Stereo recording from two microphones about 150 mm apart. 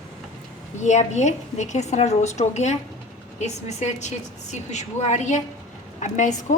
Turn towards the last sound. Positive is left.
turn(degrees=55)  # may be behind; listen again after turning